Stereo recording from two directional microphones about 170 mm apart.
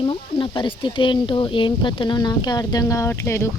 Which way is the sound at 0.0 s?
30° left (ahead or behind).